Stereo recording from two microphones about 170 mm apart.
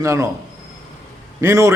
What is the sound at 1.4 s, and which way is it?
Speech, 15° right (ahead or behind).